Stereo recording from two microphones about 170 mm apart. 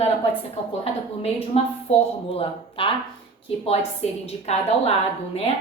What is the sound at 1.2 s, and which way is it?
A woman's voice, 40° left (ahead or behind).